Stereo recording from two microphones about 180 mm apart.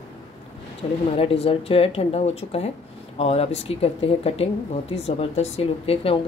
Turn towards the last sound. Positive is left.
turn(degrees=35)  # may be behind; listen again after turning